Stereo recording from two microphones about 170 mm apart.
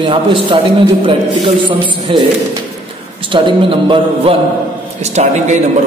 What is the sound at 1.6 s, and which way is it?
Speech, 30° right (ahead or behind).